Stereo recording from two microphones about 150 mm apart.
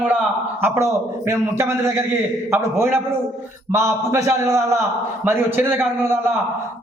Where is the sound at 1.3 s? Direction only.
20° right (ahead or behind).